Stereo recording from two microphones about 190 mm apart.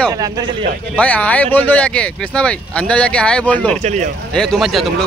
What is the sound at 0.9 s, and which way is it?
Speech, 5° left (ahead or behind).